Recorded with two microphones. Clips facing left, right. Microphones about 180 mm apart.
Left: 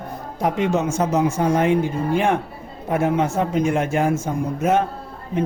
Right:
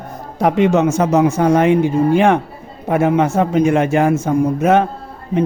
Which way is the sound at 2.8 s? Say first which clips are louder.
Right 5 dB; 75° right (ahead or behind).